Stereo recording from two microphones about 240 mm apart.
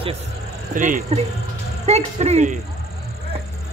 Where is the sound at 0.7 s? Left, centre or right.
Right.